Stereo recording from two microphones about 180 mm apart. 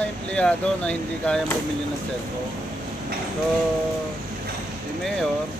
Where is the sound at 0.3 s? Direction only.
5° left (ahead or behind).